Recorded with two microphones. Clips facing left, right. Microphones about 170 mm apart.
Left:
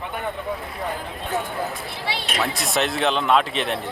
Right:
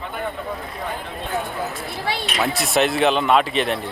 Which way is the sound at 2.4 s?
Centre (ahead or behind).